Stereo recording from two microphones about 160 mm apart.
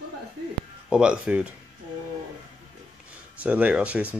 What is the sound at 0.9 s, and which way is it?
Speech, 5° right (ahead or behind).